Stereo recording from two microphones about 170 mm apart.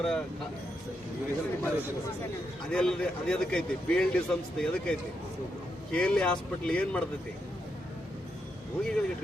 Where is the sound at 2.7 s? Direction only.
5° left (ahead or behind).